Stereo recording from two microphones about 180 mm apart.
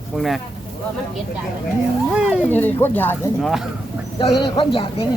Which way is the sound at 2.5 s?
10° left (ahead or behind).